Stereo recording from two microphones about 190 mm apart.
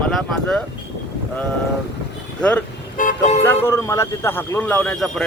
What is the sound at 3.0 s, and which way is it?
Toot, 40° left (ahead or behind).